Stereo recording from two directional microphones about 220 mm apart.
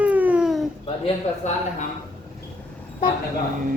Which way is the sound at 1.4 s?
30° left (ahead or behind).